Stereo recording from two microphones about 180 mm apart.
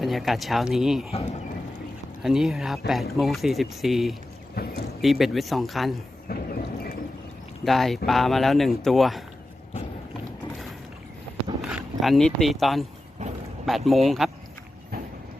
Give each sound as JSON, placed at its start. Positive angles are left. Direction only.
{"t": 0.0, "sound": "speech", "side_deg": 0}
{"t": 1.1, "sound": "speech", "side_deg": 40}
{"t": 2.2, "sound": "speech", "side_deg": 0}
{"t": 4.6, "sound": "speech", "side_deg": 60}
{"t": 5.0, "sound": "speech", "side_deg": 0}
{"t": 6.2, "sound": "a sound", "side_deg": 55}
{"t": 7.6, "sound": "speech", "side_deg": 0}
{"t": 11.6, "sound": "speech", "side_deg": 0}